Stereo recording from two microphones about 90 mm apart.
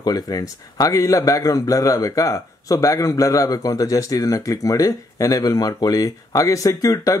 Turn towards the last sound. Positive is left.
turn(degrees=40)  # may be behind; listen again after turning